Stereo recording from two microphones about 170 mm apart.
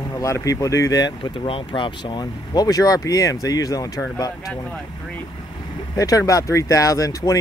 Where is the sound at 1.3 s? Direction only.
30° left (ahead or behind).